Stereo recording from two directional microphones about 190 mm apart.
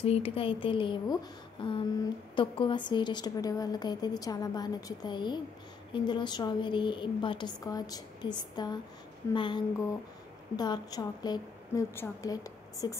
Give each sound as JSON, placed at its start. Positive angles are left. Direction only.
{"t": 0.0, "sound": "a woman's voice", "side_deg": 30}